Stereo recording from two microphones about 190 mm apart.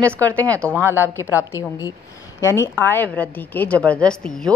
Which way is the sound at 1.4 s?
15° left (ahead or behind).